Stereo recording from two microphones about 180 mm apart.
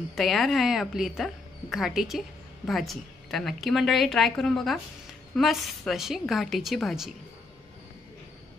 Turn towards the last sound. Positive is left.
turn(degrees=0)  # may be behind; listen again after turning